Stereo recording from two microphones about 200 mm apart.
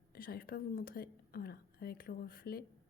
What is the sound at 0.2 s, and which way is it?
Speech, 50° left (ahead or behind).